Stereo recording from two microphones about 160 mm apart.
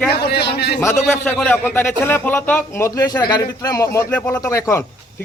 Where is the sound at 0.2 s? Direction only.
90° left.